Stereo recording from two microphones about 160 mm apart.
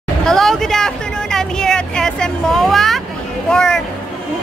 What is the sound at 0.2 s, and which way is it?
Vehicle, 5° left (ahead or behind).